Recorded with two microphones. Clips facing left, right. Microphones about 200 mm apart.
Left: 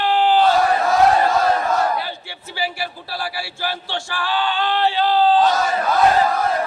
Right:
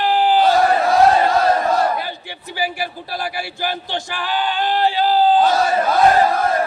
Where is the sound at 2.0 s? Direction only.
15° right (ahead or behind).